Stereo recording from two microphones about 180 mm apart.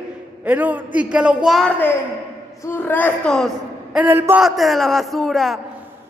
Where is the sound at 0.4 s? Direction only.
10° right (ahead or behind).